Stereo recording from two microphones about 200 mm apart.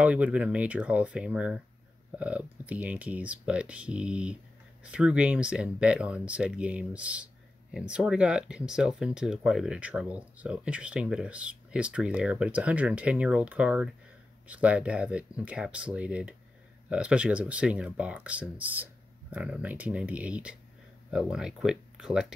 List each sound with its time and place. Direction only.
0.0 s speech: 5° right (ahead or behind)